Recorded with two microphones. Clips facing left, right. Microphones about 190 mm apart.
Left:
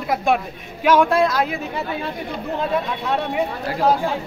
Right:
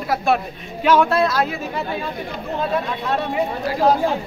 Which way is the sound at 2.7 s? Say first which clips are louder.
Even; 10° left (ahead or behind).